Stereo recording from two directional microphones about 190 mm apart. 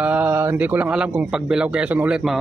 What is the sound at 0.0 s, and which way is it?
A man's voice, 10° right (ahead or behind).